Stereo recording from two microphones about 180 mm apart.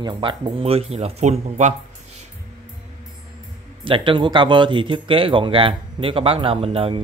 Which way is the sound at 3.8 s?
30° right (ahead or behind).